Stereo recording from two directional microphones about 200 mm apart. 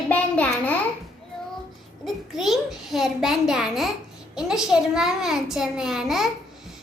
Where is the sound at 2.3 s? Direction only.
Centre (ahead or behind).